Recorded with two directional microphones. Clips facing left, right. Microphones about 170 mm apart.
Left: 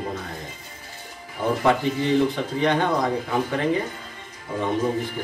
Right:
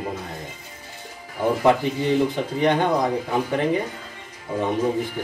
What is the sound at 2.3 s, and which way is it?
A man's voice, 15° right (ahead or behind).